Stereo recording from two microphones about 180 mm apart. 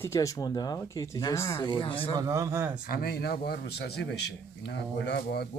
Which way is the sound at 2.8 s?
55° left (ahead or behind).